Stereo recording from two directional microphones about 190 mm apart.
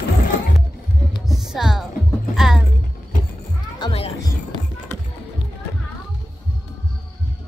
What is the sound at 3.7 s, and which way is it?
Music, 25° left (ahead or behind).